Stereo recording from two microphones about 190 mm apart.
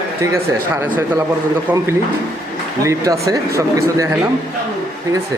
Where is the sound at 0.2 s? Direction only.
15° right (ahead or behind).